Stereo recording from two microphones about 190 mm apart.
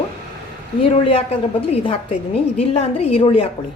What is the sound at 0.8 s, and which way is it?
A woman's voice, 30° left (ahead or behind).